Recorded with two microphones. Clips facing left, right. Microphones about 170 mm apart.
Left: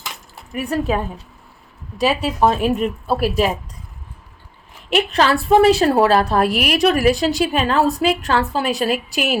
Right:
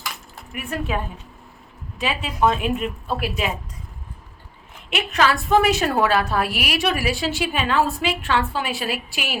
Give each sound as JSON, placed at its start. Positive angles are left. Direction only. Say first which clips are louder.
{"t": 0.5, "sound": "a woman's voice", "louder": "left 7 dB", "side_deg": 40}
{"t": 2.0, "sound": "a woman's voice", "louder": "left 5 dB", "side_deg": 40}
{"t": 4.9, "sound": "a woman's voice", "louder": "left 4 dB", "side_deg": 35}